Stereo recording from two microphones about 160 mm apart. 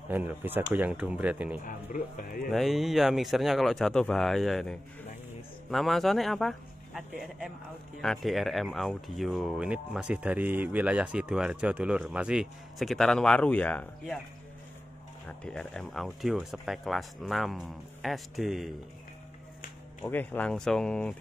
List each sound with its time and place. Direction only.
0.1 s speech: 10° right (ahead or behind)
1.6 s speech: 55° left (ahead or behind)
2.5 s speech: centre (ahead or behind)
15.2 s speech: 5° left (ahead or behind)
20.0 s speech: 10° left (ahead or behind)